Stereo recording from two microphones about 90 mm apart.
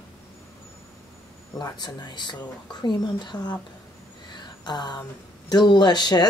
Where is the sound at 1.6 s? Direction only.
50° left (ahead or behind).